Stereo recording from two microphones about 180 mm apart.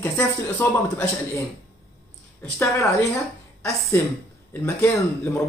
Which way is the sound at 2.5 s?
15° left (ahead or behind).